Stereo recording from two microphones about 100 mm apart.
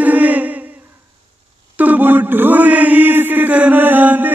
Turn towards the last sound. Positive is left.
turn(degrees=-20)  # may be behind; listen again after turning